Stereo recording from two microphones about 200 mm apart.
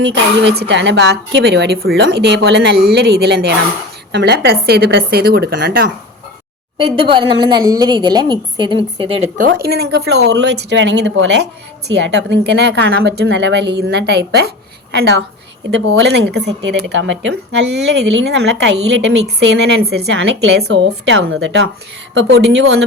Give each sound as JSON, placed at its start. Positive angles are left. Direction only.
{"t": 0.0, "sound": "a woman's voice", "side_deg": -65}
{"t": 6.7, "sound": "a woman's voice", "side_deg": -25}
{"t": 9.6, "sound": "a woman's voice", "side_deg": -55}